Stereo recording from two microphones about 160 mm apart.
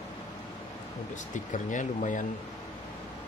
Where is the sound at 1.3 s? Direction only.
50° left (ahead or behind).